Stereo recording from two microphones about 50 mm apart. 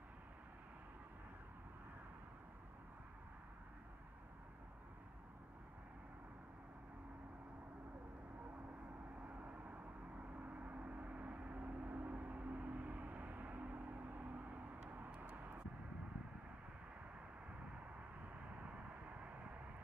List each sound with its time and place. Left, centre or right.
9.3 s vehicle: right
18.6 s vehicle: right